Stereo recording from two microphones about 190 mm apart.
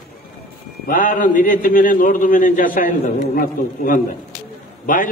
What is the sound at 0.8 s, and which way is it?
A man's voice, 45° left (ahead or behind).